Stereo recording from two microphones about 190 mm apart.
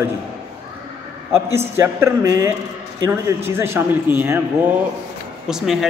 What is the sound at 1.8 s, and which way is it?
A man's voice, 15° right (ahead or behind).